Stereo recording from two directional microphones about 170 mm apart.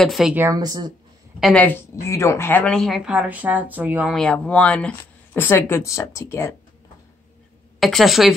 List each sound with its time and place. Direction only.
0.0 s a woman's voice: centre (ahead or behind)
0.5 s speech: 20° right (ahead or behind)
1.4 s a woman's voice: 10° left (ahead or behind); by 4.2 s 10° right (ahead or behind)
4.2 s speech: 5° left (ahead or behind)
7.8 s a woman's voice: centre (ahead or behind)